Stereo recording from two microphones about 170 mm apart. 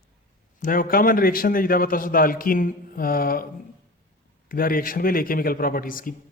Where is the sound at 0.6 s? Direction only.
55° left (ahead or behind).